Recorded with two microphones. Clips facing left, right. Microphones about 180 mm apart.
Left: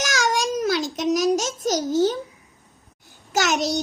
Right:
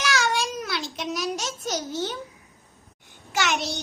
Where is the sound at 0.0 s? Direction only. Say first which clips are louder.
Left 2 dB; 45° left (ahead or behind).